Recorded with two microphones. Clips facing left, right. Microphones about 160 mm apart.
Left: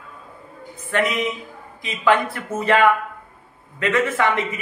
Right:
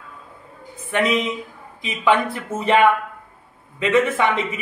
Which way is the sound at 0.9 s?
15° right (ahead or behind).